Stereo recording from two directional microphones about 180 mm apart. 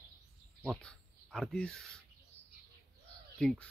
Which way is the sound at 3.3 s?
5° left (ahead or behind).